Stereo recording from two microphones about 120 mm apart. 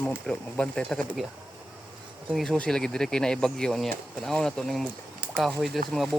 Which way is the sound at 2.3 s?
5° left (ahead or behind).